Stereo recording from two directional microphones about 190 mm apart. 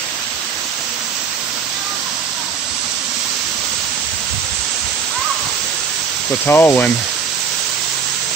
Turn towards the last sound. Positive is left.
turn(degrees=10)  # may be behind; listen again after turning